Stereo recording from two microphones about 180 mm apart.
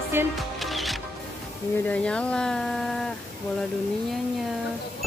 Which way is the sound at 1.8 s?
5° left (ahead or behind).